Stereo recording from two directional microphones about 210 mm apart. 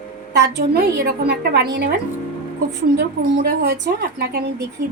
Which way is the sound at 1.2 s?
55° right (ahead or behind).